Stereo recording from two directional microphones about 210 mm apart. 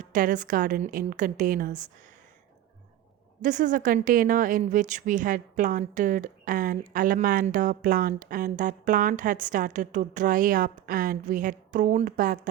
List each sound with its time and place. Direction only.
0.0 s a woman's voice: 40° right (ahead or behind)
3.4 s a woman's voice: 40° right (ahead or behind)